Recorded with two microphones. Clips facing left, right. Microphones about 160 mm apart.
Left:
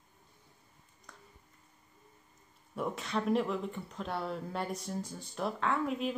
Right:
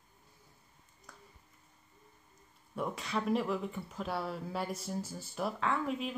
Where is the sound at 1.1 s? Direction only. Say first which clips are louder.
Even; 5° right (ahead or behind).